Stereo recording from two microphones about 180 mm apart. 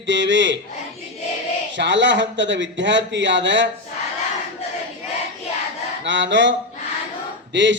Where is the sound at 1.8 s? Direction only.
90° right.